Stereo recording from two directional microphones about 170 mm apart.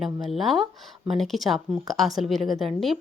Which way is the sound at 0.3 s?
Centre (ahead or behind).